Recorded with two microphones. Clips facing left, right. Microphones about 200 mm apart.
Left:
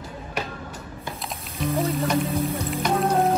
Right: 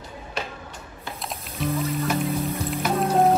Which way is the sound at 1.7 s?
30° left (ahead or behind).